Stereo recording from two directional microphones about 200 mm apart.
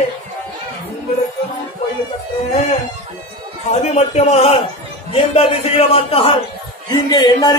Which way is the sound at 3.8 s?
30° left (ahead or behind).